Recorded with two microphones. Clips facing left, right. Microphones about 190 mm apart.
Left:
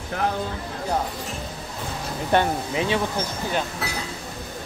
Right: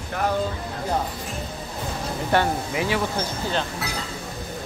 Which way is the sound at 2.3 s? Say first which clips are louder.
Left 1 dB; 20° left (ahead or behind).